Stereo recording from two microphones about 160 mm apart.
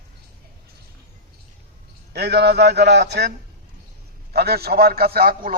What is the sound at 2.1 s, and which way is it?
A man's voice, 90° right.